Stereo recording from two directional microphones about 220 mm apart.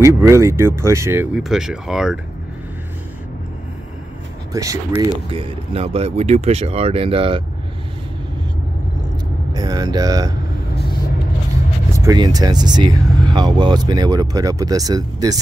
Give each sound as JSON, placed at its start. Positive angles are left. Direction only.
{"t": 0.0, "sound": "speech", "side_deg": -15}
{"t": 4.5, "sound": "speech", "side_deg": -15}
{"t": 5.3, "sound": "speech", "side_deg": -25}
{"t": 9.5, "sound": "speech", "side_deg": -15}
{"t": 12.0, "sound": "speech", "side_deg": -15}